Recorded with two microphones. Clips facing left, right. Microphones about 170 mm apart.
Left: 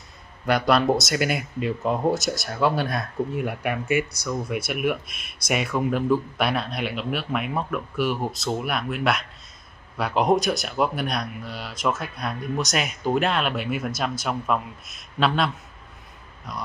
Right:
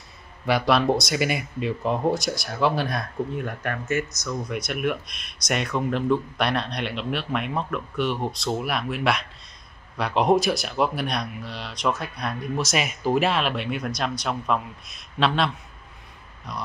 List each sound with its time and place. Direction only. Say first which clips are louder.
0.5 s speech: left 1 dB; centre (ahead or behind)